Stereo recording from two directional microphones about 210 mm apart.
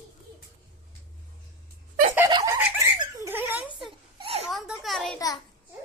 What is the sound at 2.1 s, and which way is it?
Giggle, 15° right (ahead or behind).